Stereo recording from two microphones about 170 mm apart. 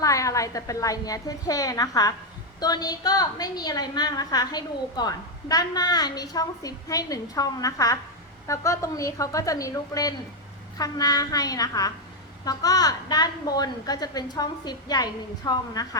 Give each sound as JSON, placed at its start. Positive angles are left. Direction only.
{"t": 0.0, "sound": "a woman's voice", "side_deg": 20}